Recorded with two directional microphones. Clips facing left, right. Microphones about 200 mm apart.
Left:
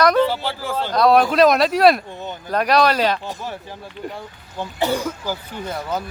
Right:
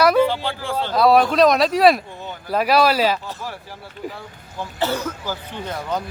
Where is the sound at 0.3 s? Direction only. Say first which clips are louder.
Even; 5° left (ahead or behind).